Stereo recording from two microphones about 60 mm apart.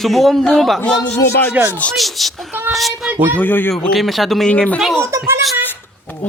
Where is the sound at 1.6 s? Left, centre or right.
Right.